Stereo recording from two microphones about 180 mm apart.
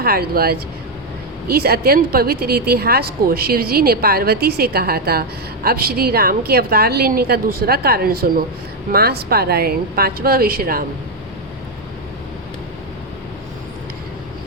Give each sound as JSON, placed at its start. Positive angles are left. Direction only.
{"t": 0.0, "sound": "speech", "side_deg": -55}